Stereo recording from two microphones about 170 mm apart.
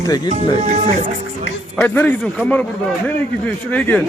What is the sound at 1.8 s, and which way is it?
A man's voice, 10° left (ahead or behind).